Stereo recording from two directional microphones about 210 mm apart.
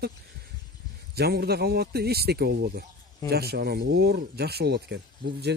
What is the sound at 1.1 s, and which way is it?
Speech, 50° right (ahead or behind).